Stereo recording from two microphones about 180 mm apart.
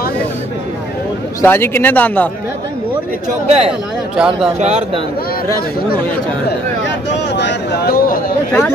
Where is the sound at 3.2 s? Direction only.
35° right (ahead or behind).